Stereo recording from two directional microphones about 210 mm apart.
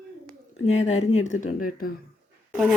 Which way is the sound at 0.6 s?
35° left (ahead or behind).